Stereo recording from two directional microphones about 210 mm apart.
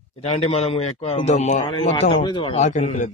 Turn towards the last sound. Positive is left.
turn(degrees=35)  # may be behind; listen again after turning